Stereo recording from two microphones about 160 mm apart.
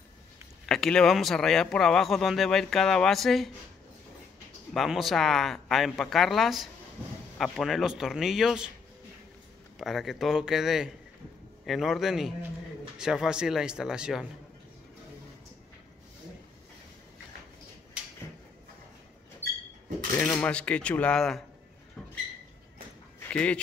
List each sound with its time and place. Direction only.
0.7 s speech: 5° left (ahead or behind)
4.7 s speech: centre (ahead or behind)
9.8 s speech: centre (ahead or behind)
20.2 s speech: 10° left (ahead or behind)
23.1 s a sound: 5° left (ahead or behind)